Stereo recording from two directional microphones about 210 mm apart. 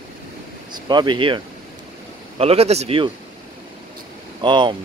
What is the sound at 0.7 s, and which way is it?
Speech, 20° right (ahead or behind).